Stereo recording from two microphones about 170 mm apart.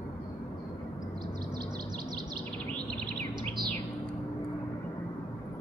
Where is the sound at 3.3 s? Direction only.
25° right (ahead or behind).